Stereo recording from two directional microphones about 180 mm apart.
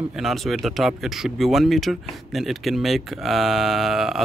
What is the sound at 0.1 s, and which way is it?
Speech, centre (ahead or behind).